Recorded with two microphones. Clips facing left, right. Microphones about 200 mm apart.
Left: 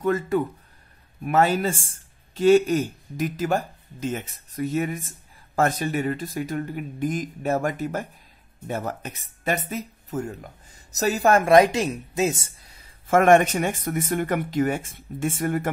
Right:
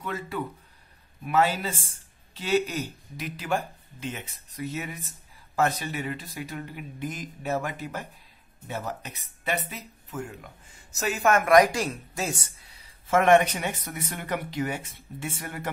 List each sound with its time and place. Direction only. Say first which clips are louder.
0.0 s speech: left 10 dB; 45° left (ahead or behind); by 12.4 s 20° left (ahead or behind)
13.1 s speech: left 3 dB; 45° left (ahead or behind)